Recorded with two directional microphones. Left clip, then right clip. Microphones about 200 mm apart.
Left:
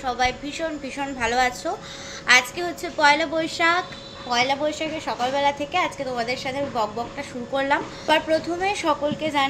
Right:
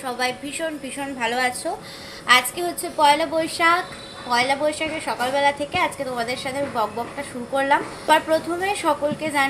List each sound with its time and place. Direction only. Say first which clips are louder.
0.0 s a woman's voice: left 2 dB; centre (ahead or behind)